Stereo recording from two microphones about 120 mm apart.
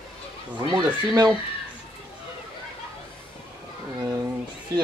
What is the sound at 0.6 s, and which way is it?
Speech, 35° right (ahead or behind).